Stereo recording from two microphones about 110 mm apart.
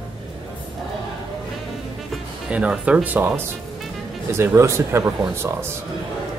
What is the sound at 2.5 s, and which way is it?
Speech, 10° right (ahead or behind).